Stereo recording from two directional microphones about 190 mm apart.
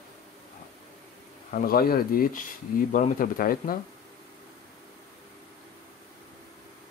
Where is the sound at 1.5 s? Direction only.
50° left (ahead or behind).